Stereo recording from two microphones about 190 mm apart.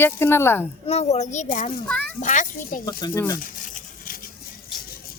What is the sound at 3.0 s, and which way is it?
Speech, 15° left (ahead or behind).